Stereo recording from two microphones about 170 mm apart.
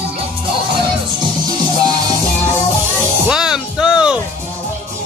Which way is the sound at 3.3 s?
5° right (ahead or behind).